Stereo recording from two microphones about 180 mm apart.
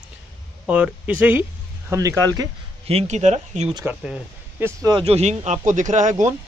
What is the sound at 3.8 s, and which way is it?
Speech, 5° right (ahead or behind).